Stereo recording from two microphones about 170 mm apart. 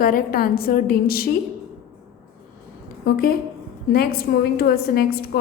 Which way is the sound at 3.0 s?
60° left (ahead or behind).